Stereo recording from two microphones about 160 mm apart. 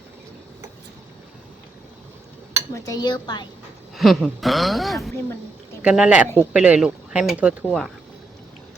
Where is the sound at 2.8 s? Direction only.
25° left (ahead or behind).